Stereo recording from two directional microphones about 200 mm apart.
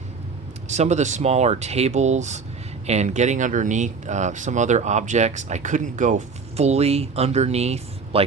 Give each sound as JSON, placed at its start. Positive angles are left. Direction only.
{"t": 0.7, "sound": "speech", "side_deg": -35}